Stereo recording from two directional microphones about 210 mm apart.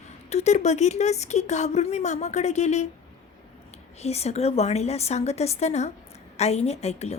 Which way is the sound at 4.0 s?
30° left (ahead or behind).